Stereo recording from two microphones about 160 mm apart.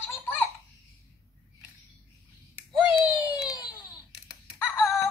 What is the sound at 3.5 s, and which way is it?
Crying, 25° left (ahead or behind).